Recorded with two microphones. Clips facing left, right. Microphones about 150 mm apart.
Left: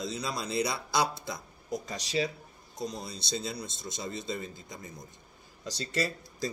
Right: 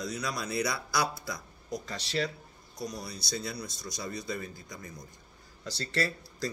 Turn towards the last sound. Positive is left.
turn(degrees=15)  # may be behind; listen again after turning